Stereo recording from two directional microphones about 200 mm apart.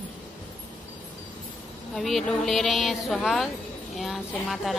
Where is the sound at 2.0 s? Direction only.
Centre (ahead or behind).